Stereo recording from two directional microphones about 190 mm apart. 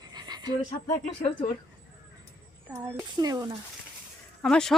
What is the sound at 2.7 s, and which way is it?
Speech, 15° right (ahead or behind).